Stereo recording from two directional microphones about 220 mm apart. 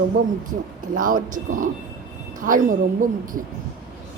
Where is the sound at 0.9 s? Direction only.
35° right (ahead or behind).